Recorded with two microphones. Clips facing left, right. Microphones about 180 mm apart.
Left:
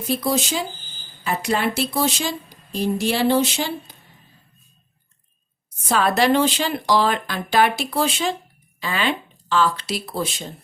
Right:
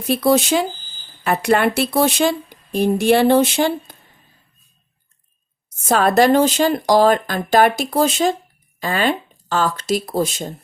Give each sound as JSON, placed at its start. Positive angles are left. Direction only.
{"t": 0.1, "sound": "speech", "side_deg": -60}
{"t": 5.9, "sound": "speech", "side_deg": -45}